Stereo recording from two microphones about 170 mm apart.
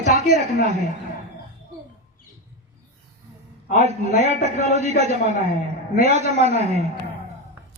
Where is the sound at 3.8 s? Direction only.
40° right (ahead or behind).